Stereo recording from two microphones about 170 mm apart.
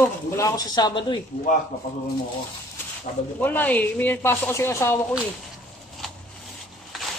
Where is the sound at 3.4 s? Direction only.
10° left (ahead or behind).